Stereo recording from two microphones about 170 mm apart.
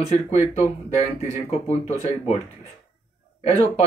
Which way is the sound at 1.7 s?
40° left (ahead or behind).